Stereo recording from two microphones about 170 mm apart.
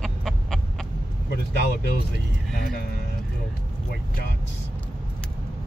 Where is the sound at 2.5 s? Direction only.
65° left (ahead or behind).